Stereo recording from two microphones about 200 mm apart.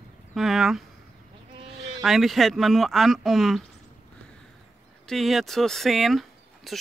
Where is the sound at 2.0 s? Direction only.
Centre (ahead or behind).